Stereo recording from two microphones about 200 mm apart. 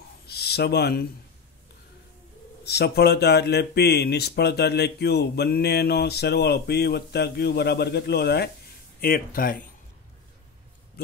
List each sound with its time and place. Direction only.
0.3 s speech: 55° left (ahead or behind)
2.6 s speech: 55° left (ahead or behind)